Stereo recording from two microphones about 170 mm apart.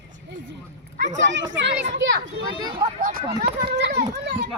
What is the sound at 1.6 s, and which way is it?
Speech, 90° right.